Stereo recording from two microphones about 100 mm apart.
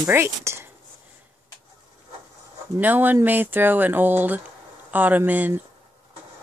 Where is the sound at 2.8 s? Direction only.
20° right (ahead or behind).